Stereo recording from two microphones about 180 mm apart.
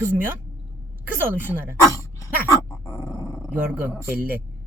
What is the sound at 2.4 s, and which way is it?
Dog, 15° left (ahead or behind).